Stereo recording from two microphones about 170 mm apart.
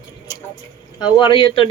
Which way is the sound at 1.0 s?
25° left (ahead or behind).